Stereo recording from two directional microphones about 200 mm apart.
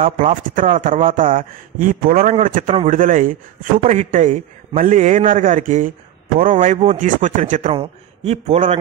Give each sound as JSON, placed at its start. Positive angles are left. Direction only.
{"t": 0.0, "sound": "a man's voice", "side_deg": -40}